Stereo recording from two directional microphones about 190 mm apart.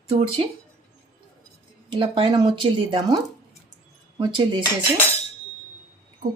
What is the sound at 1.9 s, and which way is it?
Speech, 25° right (ahead or behind).